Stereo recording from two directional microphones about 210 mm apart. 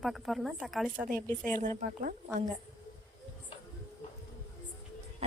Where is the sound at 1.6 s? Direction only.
40° right (ahead or behind).